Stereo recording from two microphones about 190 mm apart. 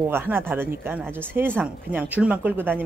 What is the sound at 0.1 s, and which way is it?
Speech, 10° right (ahead or behind).